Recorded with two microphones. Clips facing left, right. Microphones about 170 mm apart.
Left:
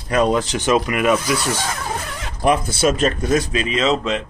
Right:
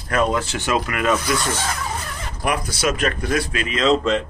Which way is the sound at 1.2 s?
10° left (ahead or behind).